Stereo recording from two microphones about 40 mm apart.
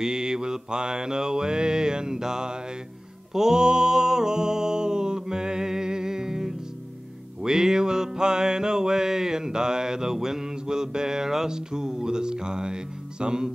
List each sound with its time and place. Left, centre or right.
0.0 s mantra: centre
3.3 s a sound: centre
7.4 s music: centre